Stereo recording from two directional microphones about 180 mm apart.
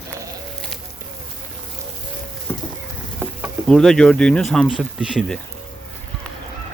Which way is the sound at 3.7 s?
5° left (ahead or behind).